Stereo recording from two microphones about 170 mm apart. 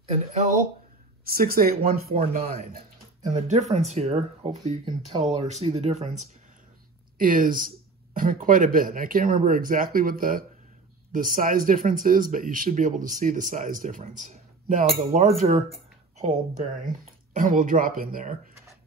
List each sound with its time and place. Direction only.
1.2 s speech: 60° right (ahead or behind)
3.3 s speech: 40° right (ahead or behind)
7.2 s speech: 55° right (ahead or behind)